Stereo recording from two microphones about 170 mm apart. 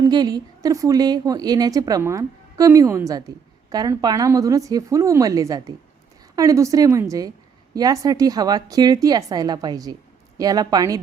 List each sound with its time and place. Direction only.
0.1 s a woman's voice: 25° right (ahead or behind)